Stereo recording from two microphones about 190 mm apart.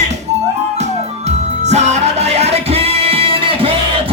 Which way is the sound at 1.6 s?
35° right (ahead or behind).